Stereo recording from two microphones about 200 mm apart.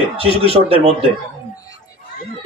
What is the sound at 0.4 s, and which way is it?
Speech, 30° right (ahead or behind).